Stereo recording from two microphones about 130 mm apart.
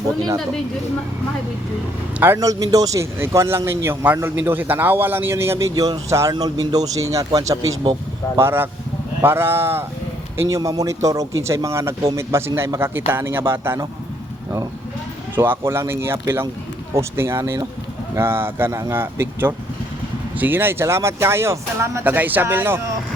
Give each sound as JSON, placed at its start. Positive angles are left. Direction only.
{"t": 2.1, "sound": "a man's voice", "side_deg": -15}
{"t": 2.4, "sound": "a man's voice", "side_deg": -25}
{"t": 15.4, "sound": "a man's voice", "side_deg": -20}